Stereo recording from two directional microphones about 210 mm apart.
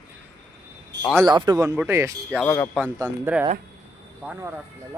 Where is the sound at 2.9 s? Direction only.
15° right (ahead or behind).